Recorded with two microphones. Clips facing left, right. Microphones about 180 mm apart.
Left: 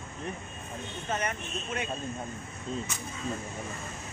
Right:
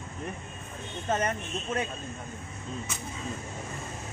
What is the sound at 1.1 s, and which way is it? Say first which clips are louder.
Speech: right 4 dB; 40° right (ahead or behind).